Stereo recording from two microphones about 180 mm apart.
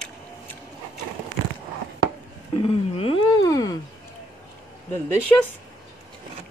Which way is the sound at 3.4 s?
20° left (ahead or behind).